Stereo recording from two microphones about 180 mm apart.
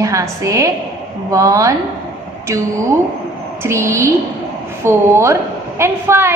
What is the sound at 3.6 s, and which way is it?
A woman's voice, 15° right (ahead or behind).